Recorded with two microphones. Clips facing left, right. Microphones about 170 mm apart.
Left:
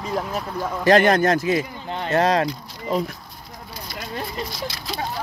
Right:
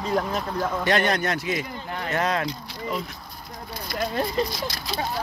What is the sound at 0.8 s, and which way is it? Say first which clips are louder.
Speech: left 9 dB; 45° left (ahead or behind).